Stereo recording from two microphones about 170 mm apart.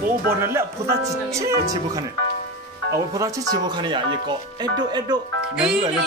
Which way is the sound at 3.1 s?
20° right (ahead or behind).